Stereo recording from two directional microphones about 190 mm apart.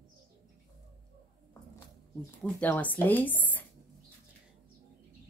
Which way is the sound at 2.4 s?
10° left (ahead or behind).